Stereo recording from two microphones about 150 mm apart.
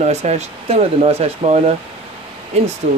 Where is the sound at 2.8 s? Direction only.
50° right (ahead or behind).